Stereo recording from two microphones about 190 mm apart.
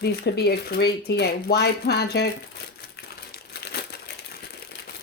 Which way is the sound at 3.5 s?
60° left (ahead or behind).